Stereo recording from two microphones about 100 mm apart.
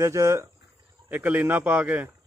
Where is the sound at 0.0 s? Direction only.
30° right (ahead or behind).